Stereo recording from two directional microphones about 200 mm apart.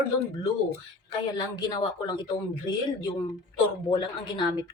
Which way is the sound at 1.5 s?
20° left (ahead or behind).